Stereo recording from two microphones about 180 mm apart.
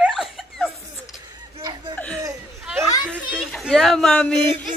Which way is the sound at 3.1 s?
5° right (ahead or behind).